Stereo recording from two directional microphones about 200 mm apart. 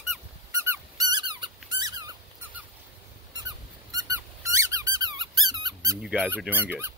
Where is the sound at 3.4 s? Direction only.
20° right (ahead or behind).